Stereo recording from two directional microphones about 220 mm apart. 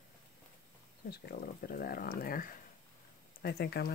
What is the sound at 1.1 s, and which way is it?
Speech, 45° left (ahead or behind).